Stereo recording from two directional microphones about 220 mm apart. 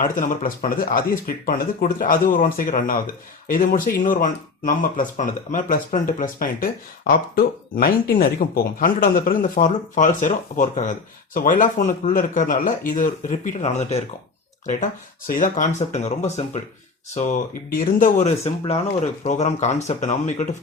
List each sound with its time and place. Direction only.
0.0 s speech: 35° left (ahead or behind)
15.3 s speech: 35° left (ahead or behind)